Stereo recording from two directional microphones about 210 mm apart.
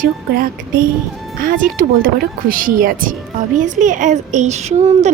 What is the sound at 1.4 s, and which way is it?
A woman's voice, 40° right (ahead or behind).